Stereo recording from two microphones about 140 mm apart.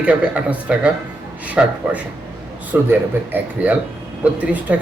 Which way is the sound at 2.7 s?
10° right (ahead or behind).